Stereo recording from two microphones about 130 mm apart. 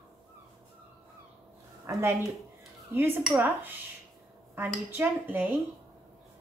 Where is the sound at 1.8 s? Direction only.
20° right (ahead or behind).